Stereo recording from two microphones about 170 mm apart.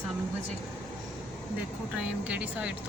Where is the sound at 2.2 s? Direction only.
5° right (ahead or behind).